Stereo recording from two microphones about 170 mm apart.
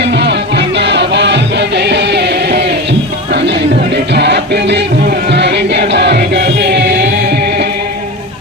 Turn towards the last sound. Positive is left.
turn(degrees=-80)